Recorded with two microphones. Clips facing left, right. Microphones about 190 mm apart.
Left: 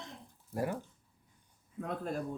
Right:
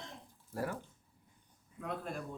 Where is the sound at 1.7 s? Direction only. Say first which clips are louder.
Left 4 dB; 40° left (ahead or behind).